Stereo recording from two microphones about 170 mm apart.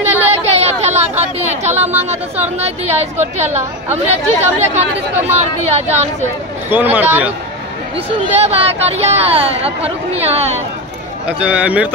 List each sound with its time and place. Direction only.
0.0 s speech: 40° right (ahead or behind)
6.7 s speech: 10° right (ahead or behind)
8.4 s speech: 40° right (ahead or behind)
11.2 s speech: 5° right (ahead or behind)